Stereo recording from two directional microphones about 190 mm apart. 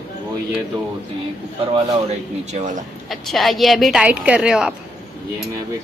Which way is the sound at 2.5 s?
40° right (ahead or behind).